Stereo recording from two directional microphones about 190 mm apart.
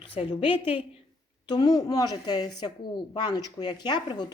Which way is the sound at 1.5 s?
20° left (ahead or behind).